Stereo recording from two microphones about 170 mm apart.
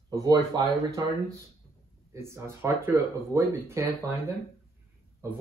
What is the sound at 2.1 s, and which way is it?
Speech, 15° right (ahead or behind).